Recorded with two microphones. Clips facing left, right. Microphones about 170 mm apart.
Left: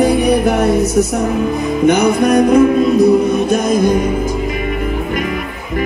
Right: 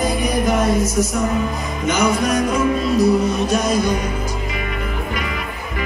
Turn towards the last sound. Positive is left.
turn(degrees=50)  # may be behind; listen again after turning